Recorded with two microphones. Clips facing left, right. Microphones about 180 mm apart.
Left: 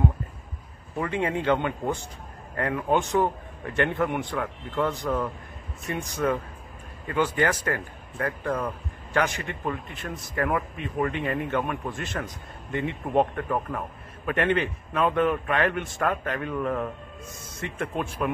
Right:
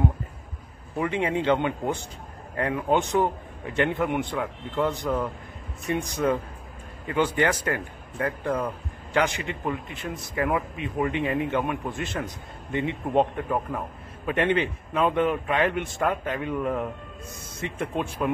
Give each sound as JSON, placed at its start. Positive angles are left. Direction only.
{"t": 0.9, "sound": "a man's voice", "side_deg": -20}